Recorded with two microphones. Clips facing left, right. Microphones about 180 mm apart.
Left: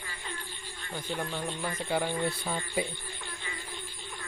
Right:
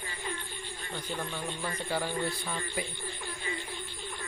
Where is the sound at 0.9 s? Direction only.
10° left (ahead or behind).